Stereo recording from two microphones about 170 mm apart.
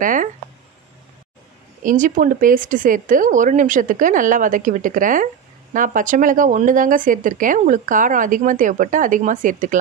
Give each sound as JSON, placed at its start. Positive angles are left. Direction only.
{"t": 0.0, "sound": "speech", "side_deg": -50}
{"t": 1.8, "sound": "speech", "side_deg": -50}